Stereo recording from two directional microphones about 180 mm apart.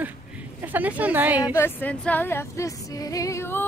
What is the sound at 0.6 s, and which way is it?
Speech, 10° right (ahead or behind).